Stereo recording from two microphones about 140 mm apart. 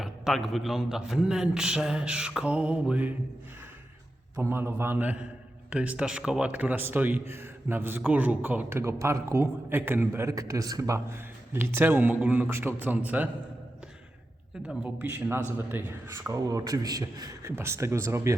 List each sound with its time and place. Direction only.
0.0 s a man's voice: centre (ahead or behind)
4.4 s a man's voice: 15° right (ahead or behind)
14.7 s a man's voice: 5° right (ahead or behind)